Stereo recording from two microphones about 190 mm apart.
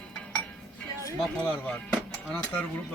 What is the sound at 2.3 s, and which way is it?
Speech, 10° left (ahead or behind).